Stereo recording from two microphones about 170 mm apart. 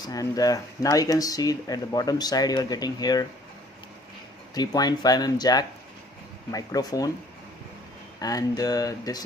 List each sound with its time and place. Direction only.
0.0 s speech: 20° left (ahead or behind)
4.5 s speech: 25° left (ahead or behind)
8.2 s speech: 20° left (ahead or behind)